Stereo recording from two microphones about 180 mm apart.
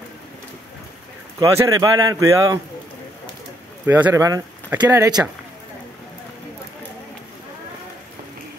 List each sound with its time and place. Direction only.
1.4 s a man's voice: 20° right (ahead or behind)
3.8 s speech: 10° right (ahead or behind)